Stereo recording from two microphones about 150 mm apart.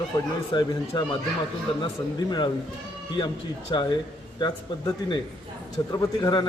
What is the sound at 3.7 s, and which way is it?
A man's voice, 30° left (ahead or behind).